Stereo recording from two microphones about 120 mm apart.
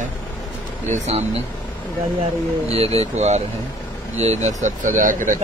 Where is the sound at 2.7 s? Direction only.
60° right (ahead or behind).